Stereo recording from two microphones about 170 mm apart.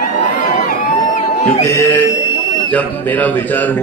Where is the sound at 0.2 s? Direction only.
50° left (ahead or behind).